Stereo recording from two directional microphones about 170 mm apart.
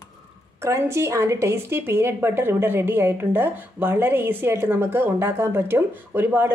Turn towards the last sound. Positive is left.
turn(degrees=-10)  # may be behind; listen again after turning